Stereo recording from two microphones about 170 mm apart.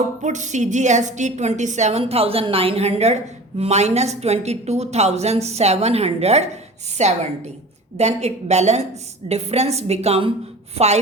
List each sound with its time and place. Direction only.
0.2 s a woman's voice: 45° right (ahead or behind)